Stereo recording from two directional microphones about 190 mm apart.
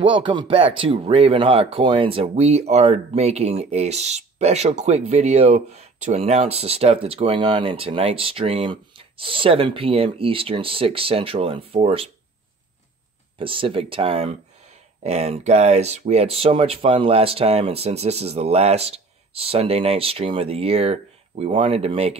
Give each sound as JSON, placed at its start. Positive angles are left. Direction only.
{"t": 0.0, "sound": "speech", "side_deg": -25}
{"t": 13.4, "sound": "speech", "side_deg": -25}